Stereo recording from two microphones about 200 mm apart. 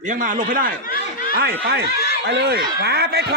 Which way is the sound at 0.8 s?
45° left (ahead or behind).